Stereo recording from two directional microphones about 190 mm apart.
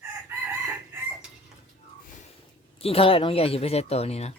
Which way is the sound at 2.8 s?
30° left (ahead or behind).